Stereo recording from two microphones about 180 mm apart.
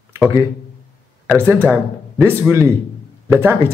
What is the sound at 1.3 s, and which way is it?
A man's voice, 10° right (ahead or behind).